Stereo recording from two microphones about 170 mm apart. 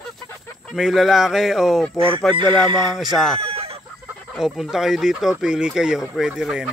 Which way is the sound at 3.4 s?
35° right (ahead or behind).